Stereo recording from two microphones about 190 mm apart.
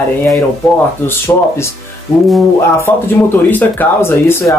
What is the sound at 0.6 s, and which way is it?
A man's voice, centre (ahead or behind).